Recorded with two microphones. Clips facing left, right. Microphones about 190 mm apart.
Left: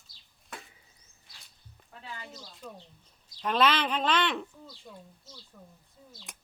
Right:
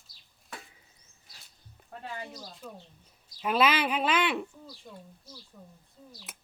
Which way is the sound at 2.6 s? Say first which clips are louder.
Even; 5° right (ahead or behind).